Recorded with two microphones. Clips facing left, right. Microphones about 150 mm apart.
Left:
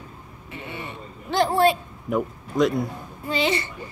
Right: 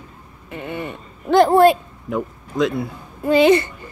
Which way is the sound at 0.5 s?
50° right (ahead or behind).